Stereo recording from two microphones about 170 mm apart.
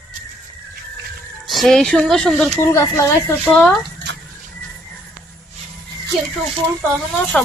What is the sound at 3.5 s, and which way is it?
Speech, centre (ahead or behind).